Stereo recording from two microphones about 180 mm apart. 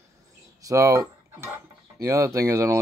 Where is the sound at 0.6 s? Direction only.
15° right (ahead or behind).